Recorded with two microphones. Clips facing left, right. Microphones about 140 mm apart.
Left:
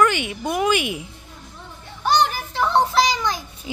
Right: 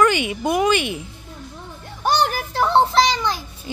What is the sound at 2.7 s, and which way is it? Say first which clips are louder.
Child singing: right 2 dB; 25° right (ahead or behind).